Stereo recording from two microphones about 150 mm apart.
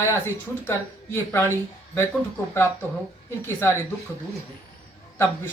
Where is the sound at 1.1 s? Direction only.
15° left (ahead or behind).